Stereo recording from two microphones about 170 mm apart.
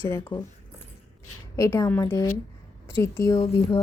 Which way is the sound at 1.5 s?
20° left (ahead or behind).